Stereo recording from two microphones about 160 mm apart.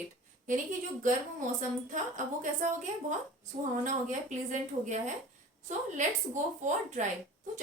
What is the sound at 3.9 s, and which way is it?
Speech, 50° right (ahead or behind).